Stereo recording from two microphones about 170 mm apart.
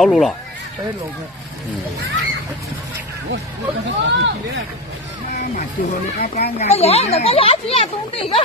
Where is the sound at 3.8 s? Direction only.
90° right.